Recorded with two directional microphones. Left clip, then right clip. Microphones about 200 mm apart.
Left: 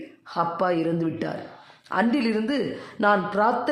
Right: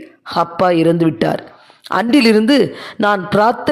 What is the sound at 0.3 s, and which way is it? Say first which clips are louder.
A woman's voice: right 10 dB; 40° right (ahead or behind).